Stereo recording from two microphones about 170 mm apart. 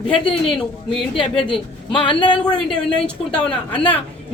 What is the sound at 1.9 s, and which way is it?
Speech, 30° left (ahead or behind).